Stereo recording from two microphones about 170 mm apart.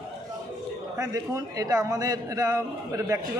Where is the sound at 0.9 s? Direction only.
20° right (ahead or behind).